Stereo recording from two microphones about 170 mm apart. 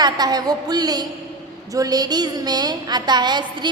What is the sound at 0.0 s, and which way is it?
A woman's voice, 25° right (ahead or behind).